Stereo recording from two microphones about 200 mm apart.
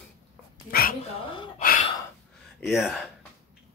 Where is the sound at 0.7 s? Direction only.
45° left (ahead or behind).